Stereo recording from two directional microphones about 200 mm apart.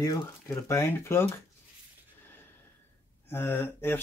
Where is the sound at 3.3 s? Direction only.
10° left (ahead or behind).